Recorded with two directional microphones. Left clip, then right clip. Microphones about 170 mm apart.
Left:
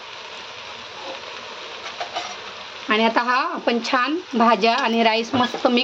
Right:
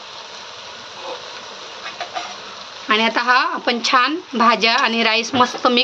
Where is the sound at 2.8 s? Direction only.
10° left (ahead or behind).